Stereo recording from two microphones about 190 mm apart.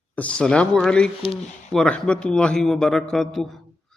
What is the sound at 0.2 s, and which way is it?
Speech, 5° left (ahead or behind).